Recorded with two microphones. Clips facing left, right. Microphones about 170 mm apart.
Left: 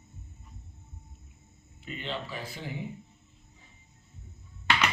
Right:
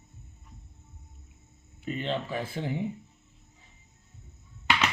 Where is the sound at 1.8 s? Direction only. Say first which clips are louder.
Right 6 dB; 50° right (ahead or behind).